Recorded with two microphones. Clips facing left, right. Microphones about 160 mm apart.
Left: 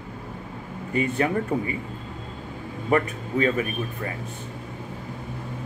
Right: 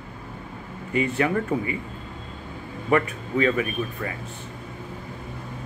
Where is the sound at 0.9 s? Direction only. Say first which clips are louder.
Right 1 dB; 35° left (ahead or behind).